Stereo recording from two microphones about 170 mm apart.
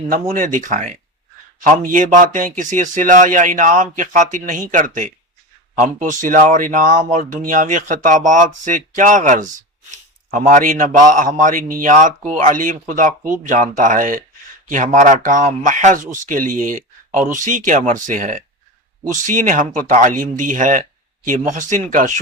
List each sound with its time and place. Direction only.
0.3 s a man's voice: 50° right (ahead or behind)